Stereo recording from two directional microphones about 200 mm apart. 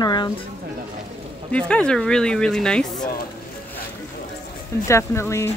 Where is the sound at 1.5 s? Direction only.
5° left (ahead or behind).